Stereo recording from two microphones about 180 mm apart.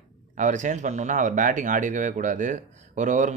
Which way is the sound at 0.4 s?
45° right (ahead or behind).